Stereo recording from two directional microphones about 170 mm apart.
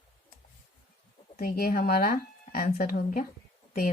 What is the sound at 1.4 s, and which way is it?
Speech, 60° left (ahead or behind).